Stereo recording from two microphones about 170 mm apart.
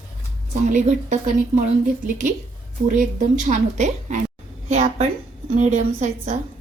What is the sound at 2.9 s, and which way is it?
A woman's voice, 50° right (ahead or behind).